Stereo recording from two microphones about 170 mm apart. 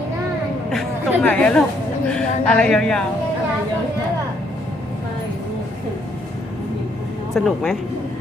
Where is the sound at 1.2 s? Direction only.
5° left (ahead or behind).